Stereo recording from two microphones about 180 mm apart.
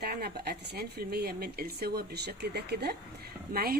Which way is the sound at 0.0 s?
60° right (ahead or behind).